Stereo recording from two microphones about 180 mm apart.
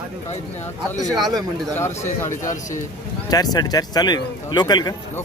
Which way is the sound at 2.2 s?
45° left (ahead or behind).